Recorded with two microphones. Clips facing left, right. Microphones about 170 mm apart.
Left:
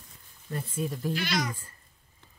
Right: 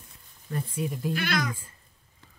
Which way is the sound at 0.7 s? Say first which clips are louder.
Even; 15° right (ahead or behind).